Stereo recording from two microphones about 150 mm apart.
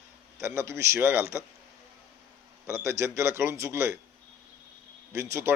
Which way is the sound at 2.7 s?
15° right (ahead or behind).